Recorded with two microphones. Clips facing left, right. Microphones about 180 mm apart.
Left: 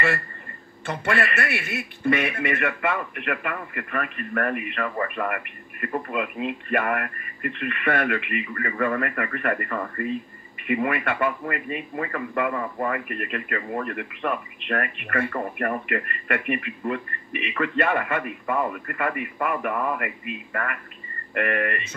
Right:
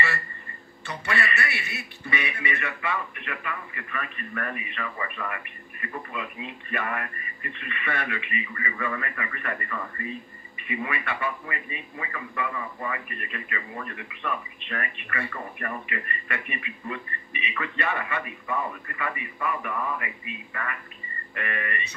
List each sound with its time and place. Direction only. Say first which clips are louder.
0.8 s a man's voice: left 5 dB; 50° left (ahead or behind)
21.4 s speech: left 8 dB; 55° left (ahead or behind)